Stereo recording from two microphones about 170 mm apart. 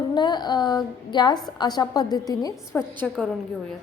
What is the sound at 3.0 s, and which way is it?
Speech, 5° left (ahead or behind).